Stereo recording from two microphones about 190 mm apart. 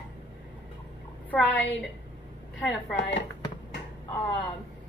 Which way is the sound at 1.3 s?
10° left (ahead or behind).